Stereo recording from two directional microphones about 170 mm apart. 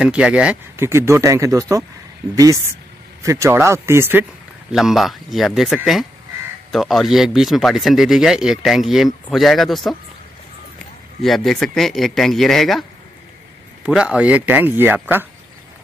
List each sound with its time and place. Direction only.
0.0 s speech: 5° right (ahead or behind)
4.7 s speech: centre (ahead or behind)
11.2 s speech: centre (ahead or behind)
13.8 s speech: 5° right (ahead or behind)